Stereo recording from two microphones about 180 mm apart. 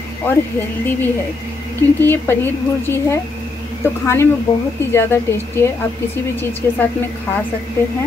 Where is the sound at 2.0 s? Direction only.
10° left (ahead or behind).